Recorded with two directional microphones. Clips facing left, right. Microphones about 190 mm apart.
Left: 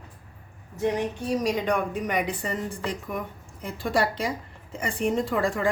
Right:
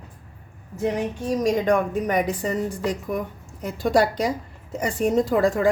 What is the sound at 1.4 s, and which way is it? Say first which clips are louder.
Speech: right 6 dB; 45° right (ahead or behind).